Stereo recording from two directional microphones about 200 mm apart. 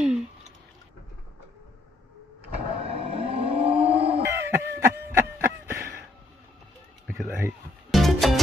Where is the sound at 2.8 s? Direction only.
30° right (ahead or behind).